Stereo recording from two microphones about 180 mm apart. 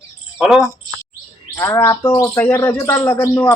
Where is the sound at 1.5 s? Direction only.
15° left (ahead or behind).